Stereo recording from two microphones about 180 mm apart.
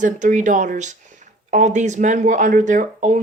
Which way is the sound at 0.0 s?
45° right (ahead or behind).